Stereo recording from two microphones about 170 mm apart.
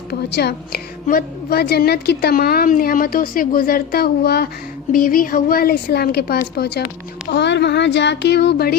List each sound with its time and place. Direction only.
0.1 s a woman's voice: 70° left (ahead or behind)
1.0 s a woman's voice: 60° left (ahead or behind)
4.9 s a woman's voice: 55° left (ahead or behind); by 6.8 s 70° left (ahead or behind)
7.3 s speech: 85° left